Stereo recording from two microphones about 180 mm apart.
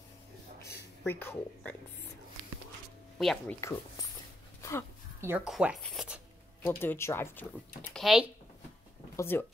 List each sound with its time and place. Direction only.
0.6 s a sound: 15° left (ahead or behind)
3.2 s speech: centre (ahead or behind)
4.6 s a sound: 15° left (ahead or behind)
5.2 s speech: 10° right (ahead or behind)
6.6 s speech: 10° left (ahead or behind)
7.9 s speech: centre (ahead or behind)
9.1 s speech: 15° left (ahead or behind)